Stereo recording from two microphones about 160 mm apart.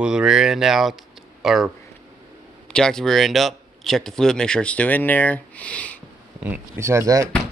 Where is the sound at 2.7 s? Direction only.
5° left (ahead or behind).